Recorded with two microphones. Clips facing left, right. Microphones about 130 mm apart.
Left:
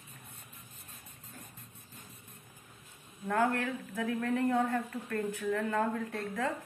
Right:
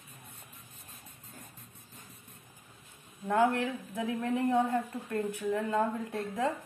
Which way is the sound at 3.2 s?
20° right (ahead or behind).